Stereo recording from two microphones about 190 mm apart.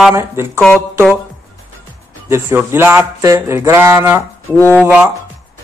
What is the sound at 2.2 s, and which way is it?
Speech, 10° right (ahead or behind).